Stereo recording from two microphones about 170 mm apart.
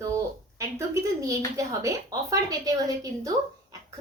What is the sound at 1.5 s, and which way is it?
A woman's voice, 20° right (ahead or behind).